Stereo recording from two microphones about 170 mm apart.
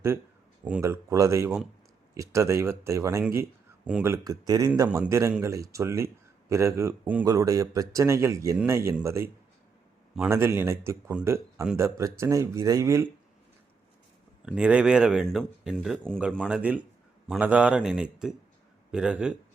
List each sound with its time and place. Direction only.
0.6 s speech: 15° right (ahead or behind)
11.6 s speech: 5° right (ahead or behind)
11.9 s speech: 15° right (ahead or behind)
14.4 s speech: 5° right (ahead or behind)
16.5 s speech: 10° right (ahead or behind)